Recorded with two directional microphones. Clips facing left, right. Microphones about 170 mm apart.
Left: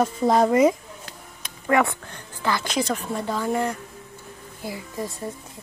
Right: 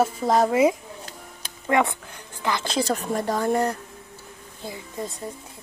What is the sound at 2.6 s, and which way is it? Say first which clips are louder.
Speech: right 1 dB; 30° right (ahead or behind).